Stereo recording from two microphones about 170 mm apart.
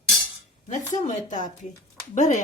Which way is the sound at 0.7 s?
45° left (ahead or behind).